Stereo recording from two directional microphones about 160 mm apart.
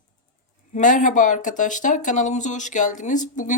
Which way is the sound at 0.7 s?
55° left (ahead or behind).